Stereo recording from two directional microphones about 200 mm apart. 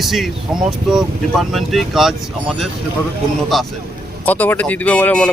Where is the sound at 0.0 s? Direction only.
Centre (ahead or behind).